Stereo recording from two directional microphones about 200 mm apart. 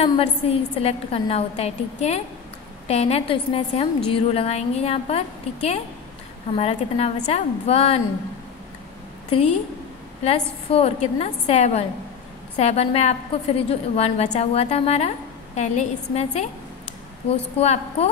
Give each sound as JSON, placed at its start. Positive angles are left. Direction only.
{"t": 0.0, "sound": "a woman's voice", "side_deg": 30}
{"t": 9.3, "sound": "a woman's voice", "side_deg": 30}
{"t": 17.6, "sound": "a woman's voice", "side_deg": 30}